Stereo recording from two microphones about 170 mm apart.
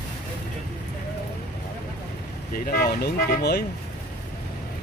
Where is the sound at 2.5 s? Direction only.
60° left (ahead or behind).